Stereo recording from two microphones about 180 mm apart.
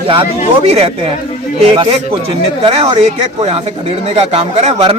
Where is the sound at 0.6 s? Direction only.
35° right (ahead or behind).